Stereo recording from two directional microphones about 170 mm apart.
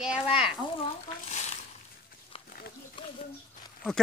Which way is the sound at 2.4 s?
60° left (ahead or behind).